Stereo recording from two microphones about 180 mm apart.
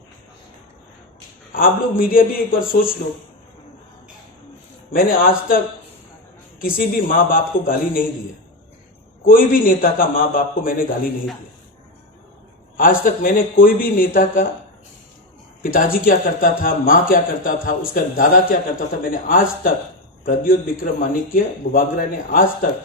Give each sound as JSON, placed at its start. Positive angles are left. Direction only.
{"t": 1.5, "sound": "speech", "side_deg": 50}
{"t": 4.9, "sound": "speech", "side_deg": 50}
{"t": 6.6, "sound": "speech", "side_deg": 50}
{"t": 9.2, "sound": "speech", "side_deg": 50}
{"t": 12.7, "sound": "speech", "side_deg": 50}
{"t": 15.6, "sound": "speech", "side_deg": 55}